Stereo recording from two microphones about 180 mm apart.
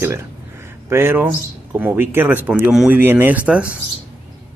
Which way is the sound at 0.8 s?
15° right (ahead or behind).